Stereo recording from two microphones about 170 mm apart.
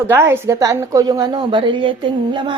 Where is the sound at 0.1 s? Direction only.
15° right (ahead or behind).